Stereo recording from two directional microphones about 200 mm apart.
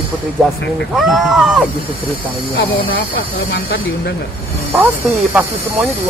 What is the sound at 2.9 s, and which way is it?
Speech, 70° left (ahead or behind).